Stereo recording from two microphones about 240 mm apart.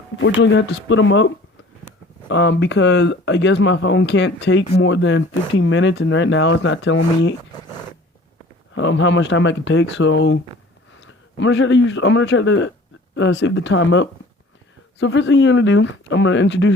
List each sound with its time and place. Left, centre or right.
0.2 s speech: left
2.3 s speech: left
8.7 s a man's voice: left